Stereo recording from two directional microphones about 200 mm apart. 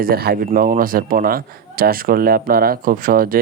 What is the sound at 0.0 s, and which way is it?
A man's voice, 50° right (ahead or behind).